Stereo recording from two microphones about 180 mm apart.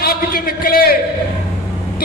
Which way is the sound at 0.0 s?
60° left (ahead or behind).